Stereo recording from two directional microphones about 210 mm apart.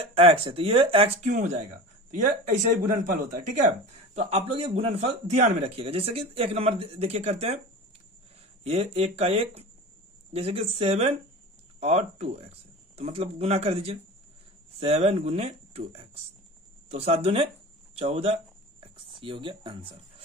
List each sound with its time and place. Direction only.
0.1 s a man's voice: 30° right (ahead or behind)
8.6 s a man's voice: 30° right (ahead or behind)
18.8 s a sound: 25° right (ahead or behind)